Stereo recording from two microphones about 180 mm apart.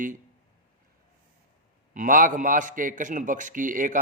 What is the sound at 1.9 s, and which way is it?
A man's voice, 45° right (ahead or behind).